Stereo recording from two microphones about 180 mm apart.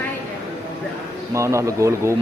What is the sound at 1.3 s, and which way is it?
Speech, 15° right (ahead or behind).